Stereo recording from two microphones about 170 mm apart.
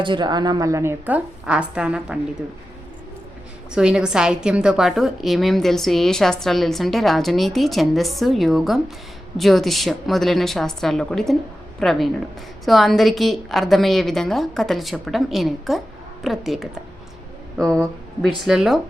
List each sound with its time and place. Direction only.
0.0 s a woman's voice: 25° right (ahead or behind); by 2.1 s 5° right (ahead or behind)
3.8 s a woman's voice: 5° right (ahead or behind)
18.4 s a woman's voice: 5° right (ahead or behind)